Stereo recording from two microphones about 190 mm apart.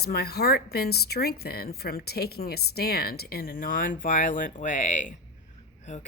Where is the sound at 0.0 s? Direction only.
55° left (ahead or behind).